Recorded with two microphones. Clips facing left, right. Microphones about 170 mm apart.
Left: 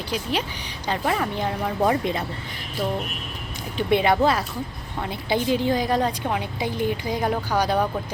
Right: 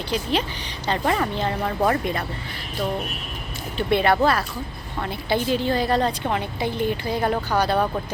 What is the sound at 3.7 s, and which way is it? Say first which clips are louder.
A woman's voice: even; 15° left (ahead or behind).